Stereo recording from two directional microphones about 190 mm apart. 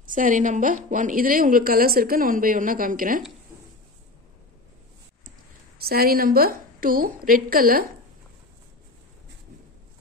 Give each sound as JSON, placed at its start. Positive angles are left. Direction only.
{"t": 0.0, "sound": "a woman's voice", "side_deg": -45}
{"t": 5.9, "sound": "a woman's voice", "side_deg": -50}